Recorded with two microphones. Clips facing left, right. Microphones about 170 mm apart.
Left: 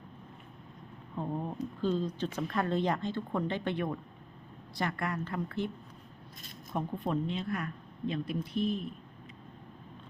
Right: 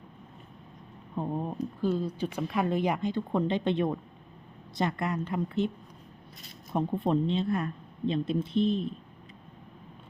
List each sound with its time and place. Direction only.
1.1 s a woman's voice: 20° right (ahead or behind)
6.7 s a woman's voice: 25° right (ahead or behind)